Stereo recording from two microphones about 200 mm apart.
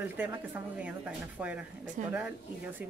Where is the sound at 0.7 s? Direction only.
5° right (ahead or behind).